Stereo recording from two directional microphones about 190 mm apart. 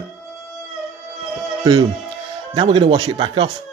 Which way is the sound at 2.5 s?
25° right (ahead or behind).